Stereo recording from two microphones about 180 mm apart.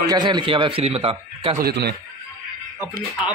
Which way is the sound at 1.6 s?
65° right (ahead or behind).